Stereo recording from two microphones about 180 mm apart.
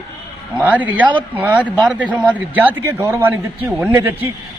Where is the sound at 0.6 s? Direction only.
10° right (ahead or behind).